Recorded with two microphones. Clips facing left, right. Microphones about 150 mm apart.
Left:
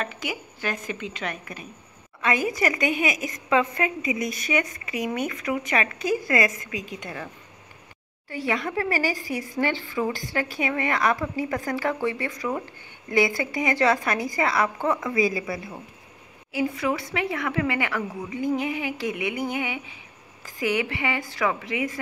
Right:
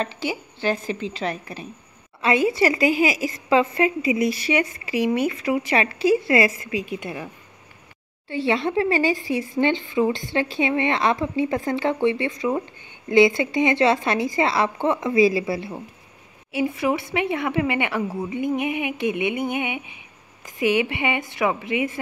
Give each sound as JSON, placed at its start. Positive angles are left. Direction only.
{"t": 0.0, "sound": "a woman's voice", "side_deg": -30}
{"t": 6.9, "sound": "a woman's voice", "side_deg": -10}
{"t": 8.3, "sound": "speech", "side_deg": -25}